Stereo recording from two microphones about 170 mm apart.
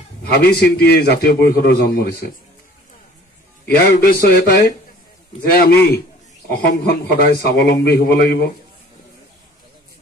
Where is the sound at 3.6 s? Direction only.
65° left (ahead or behind).